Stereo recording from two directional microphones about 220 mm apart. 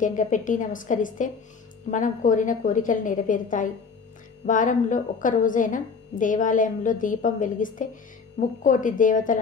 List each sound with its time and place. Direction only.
0.0 s a woman's voice: 35° left (ahead or behind)